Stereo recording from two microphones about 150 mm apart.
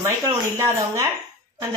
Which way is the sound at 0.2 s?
20° right (ahead or behind).